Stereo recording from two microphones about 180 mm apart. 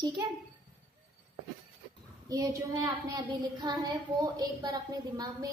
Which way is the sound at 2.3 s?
20° right (ahead or behind).